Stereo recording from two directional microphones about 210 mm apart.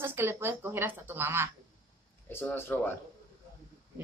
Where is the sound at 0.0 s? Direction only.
10° right (ahead or behind).